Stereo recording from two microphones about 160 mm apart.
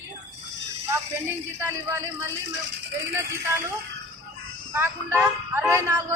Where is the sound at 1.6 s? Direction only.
15° right (ahead or behind).